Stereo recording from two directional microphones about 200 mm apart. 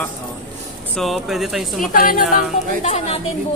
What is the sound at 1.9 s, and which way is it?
Speech, 45° left (ahead or behind).